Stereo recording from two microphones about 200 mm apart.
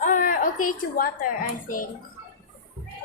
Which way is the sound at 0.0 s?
40° left (ahead or behind).